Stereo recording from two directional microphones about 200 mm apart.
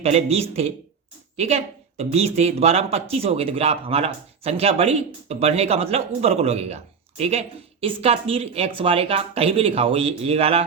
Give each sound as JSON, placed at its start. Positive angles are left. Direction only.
{"t": 0.0, "sound": "a woman's voice", "side_deg": -30}